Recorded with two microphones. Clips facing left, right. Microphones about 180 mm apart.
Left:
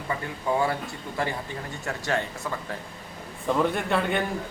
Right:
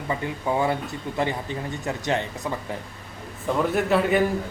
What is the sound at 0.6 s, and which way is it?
Speech, 20° right (ahead or behind).